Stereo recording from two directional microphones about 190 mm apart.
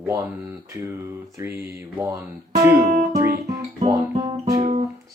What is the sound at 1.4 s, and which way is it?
Speech, 15° right (ahead or behind).